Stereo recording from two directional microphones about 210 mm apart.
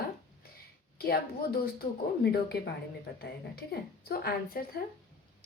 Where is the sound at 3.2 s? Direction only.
50° left (ahead or behind).